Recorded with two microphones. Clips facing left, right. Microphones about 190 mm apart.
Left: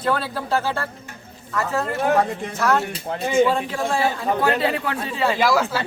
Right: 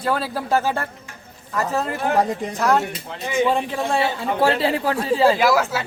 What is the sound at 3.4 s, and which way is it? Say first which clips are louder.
Speech: even; 15° right (ahead or behind).